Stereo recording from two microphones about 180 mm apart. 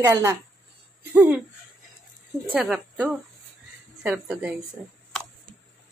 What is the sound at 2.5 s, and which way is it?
Speech, 5° right (ahead or behind).